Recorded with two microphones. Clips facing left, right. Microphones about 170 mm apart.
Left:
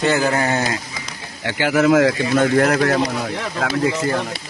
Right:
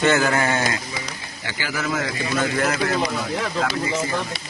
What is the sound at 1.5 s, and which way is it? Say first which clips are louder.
Speech: left 11 dB; 65° left (ahead or behind).